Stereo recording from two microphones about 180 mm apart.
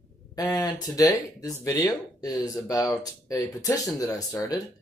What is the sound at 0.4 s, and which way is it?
Speech, 20° left (ahead or behind).